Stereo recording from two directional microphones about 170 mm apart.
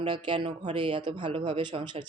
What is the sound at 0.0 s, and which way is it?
Speech, 35° right (ahead or behind).